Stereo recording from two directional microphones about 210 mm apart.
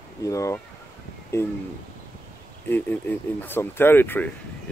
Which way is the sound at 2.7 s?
10° left (ahead or behind).